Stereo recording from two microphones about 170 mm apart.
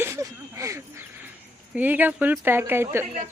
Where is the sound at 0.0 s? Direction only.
15° right (ahead or behind).